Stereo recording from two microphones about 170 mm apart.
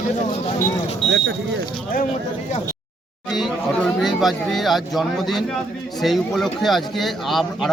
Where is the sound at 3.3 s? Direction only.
Centre (ahead or behind).